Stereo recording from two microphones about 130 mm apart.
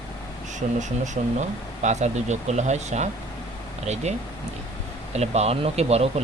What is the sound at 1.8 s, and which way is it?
Speech, 60° right (ahead or behind).